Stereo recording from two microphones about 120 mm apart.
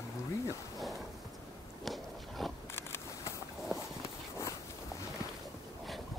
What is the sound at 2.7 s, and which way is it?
Biting, 20° left (ahead or behind).